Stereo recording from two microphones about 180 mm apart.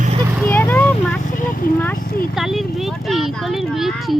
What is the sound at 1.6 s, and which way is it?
Speech, 50° left (ahead or behind).